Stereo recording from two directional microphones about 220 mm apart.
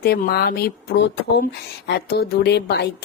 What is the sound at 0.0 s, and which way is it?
Speech, 45° left (ahead or behind).